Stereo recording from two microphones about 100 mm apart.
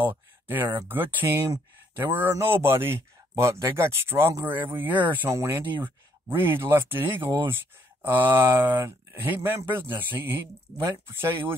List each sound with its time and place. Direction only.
0.0 s speech: 20° right (ahead or behind)